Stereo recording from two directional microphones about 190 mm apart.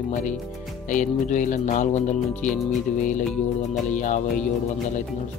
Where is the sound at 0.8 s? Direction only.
40° left (ahead or behind).